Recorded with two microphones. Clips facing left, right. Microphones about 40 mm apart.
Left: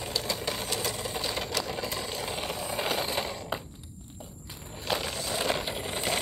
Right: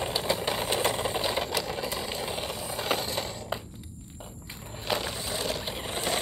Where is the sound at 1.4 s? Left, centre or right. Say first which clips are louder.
Right 2 dB; centre.